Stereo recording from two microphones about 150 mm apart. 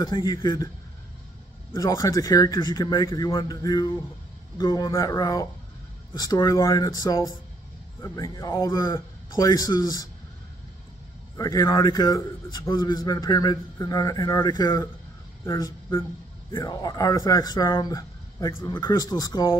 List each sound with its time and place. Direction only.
0.0 s a man's voice: 25° left (ahead or behind)
1.7 s a man's voice: 20° left (ahead or behind)
11.3 s a man's voice: 25° left (ahead or behind)